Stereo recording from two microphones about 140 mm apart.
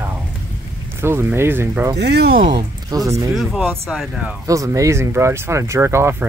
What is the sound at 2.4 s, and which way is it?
Speech, 30° right (ahead or behind).